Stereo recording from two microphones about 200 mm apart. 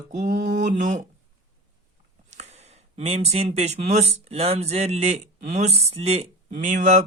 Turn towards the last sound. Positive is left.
turn(degrees=-35)  # may be behind; listen again after turning